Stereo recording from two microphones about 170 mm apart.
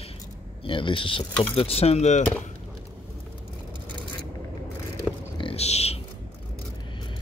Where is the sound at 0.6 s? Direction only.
30° left (ahead or behind).